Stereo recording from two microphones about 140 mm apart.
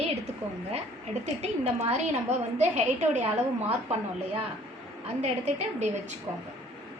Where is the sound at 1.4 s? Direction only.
50° right (ahead or behind).